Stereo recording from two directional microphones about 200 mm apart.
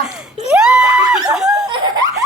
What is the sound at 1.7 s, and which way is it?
Laughter, 20° right (ahead or behind).